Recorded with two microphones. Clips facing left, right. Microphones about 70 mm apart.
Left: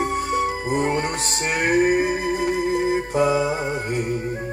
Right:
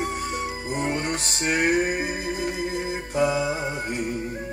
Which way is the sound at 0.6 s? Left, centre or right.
Left.